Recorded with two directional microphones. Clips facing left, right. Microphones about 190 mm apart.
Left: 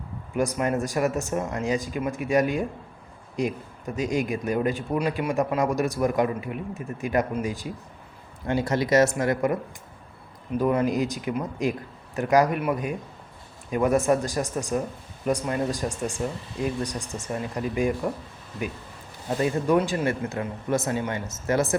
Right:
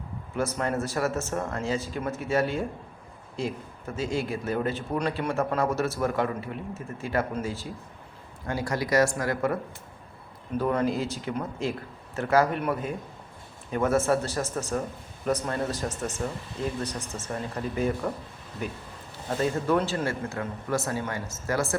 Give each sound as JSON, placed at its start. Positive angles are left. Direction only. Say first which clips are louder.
{"t": 0.3, "sound": "a man's voice", "louder": "left 3 dB", "side_deg": 15}
{"t": 10.6, "sound": "a man's voice", "louder": "left 3 dB", "side_deg": 10}
{"t": 19.4, "sound": "speech", "louder": "left 3 dB", "side_deg": 15}